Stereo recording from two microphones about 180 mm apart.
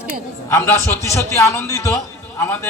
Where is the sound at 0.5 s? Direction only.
15° left (ahead or behind).